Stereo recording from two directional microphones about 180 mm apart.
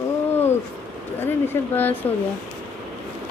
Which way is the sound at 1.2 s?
10° left (ahead or behind).